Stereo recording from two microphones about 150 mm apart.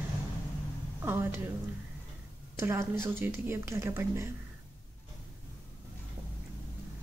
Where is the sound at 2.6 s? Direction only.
15° right (ahead or behind).